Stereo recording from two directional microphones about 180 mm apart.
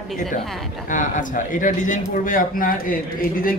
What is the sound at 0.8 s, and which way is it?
A man's voice, 45° left (ahead or behind).